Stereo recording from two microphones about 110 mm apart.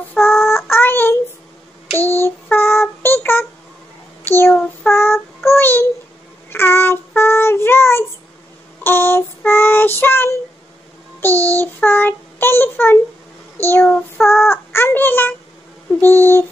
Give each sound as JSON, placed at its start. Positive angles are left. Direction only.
{"t": 0.4, "sound": "child singing", "side_deg": 25}
{"t": 13.8, "sound": "child singing", "side_deg": 5}
{"t": 14.5, "sound": "a sound", "side_deg": 20}